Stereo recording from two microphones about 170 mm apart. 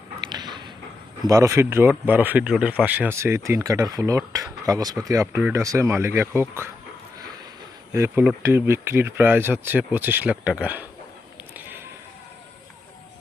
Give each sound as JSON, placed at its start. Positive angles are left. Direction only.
{"t": 0.3, "sound": "a sound", "side_deg": -25}
{"t": 1.2, "sound": "speech", "side_deg": -20}
{"t": 7.9, "sound": "speech", "side_deg": -15}